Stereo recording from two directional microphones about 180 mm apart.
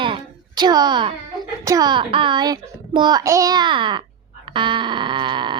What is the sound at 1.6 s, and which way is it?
A child's voice, 20° right (ahead or behind).